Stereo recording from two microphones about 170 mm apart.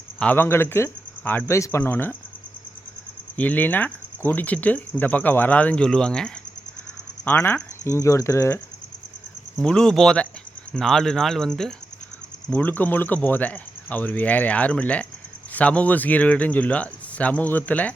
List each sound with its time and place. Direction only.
0.2 s speech: 10° left (ahead or behind)
3.3 s speech: 10° left (ahead or behind)
9.6 s speech: 5° left (ahead or behind)